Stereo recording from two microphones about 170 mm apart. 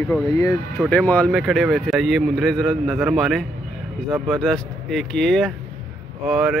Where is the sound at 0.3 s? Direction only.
20° left (ahead or behind).